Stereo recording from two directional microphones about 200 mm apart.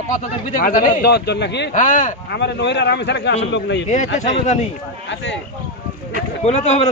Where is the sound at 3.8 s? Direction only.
40° left (ahead or behind).